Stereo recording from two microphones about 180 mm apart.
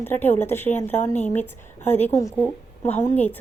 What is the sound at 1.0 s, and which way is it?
Speech, 40° left (ahead or behind).